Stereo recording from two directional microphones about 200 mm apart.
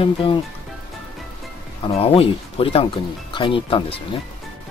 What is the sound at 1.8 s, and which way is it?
Speech, 30° left (ahead or behind).